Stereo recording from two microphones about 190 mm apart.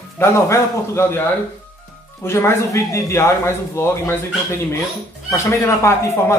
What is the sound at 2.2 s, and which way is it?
Speech, 15° left (ahead or behind).